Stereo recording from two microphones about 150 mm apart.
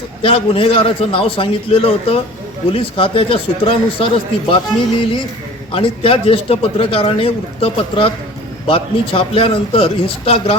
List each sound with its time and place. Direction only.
0.2 s a man's voice: 40° left (ahead or behind)
5.7 s a man's voice: 40° left (ahead or behind)